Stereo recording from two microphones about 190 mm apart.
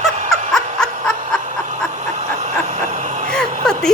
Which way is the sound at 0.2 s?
40° right (ahead or behind).